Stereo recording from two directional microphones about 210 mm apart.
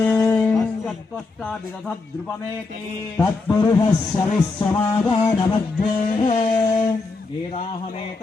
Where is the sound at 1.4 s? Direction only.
Centre (ahead or behind).